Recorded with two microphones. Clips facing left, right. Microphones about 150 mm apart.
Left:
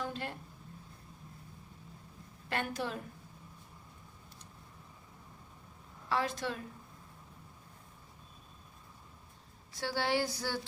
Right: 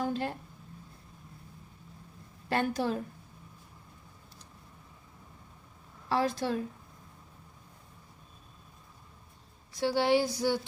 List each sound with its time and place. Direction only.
0.0 s a sound: 40° right (ahead or behind)
2.5 s a woman's voice: 35° right (ahead or behind)
6.1 s a woman's voice: 35° right (ahead or behind)
9.8 s speech: 15° right (ahead or behind)